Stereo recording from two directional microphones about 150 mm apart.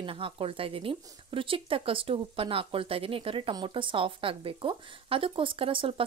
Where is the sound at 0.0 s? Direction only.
35° right (ahead or behind).